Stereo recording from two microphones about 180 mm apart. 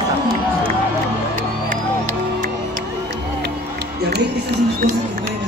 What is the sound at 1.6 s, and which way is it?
Music, 40° right (ahead or behind).